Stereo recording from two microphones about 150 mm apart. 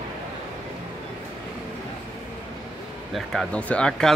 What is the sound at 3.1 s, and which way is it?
Speech, centre (ahead or behind).